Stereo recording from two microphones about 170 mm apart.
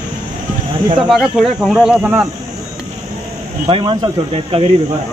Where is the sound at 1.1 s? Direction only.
5° right (ahead or behind).